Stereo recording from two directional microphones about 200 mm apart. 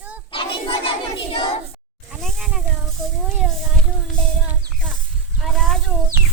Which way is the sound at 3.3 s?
Centre (ahead or behind).